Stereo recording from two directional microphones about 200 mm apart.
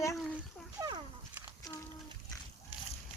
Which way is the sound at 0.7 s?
20° right (ahead or behind).